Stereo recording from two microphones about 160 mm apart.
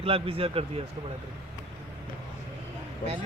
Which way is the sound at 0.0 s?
35° right (ahead or behind).